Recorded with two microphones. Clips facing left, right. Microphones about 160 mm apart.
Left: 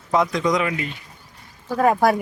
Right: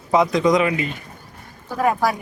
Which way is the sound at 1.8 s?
50° left (ahead or behind).